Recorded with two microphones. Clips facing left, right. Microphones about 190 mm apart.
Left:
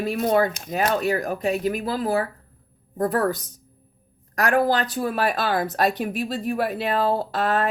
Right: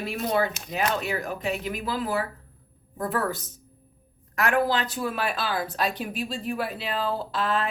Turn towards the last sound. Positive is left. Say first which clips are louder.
# left 4 dB
turn(degrees=55)  # may be behind; listen again after turning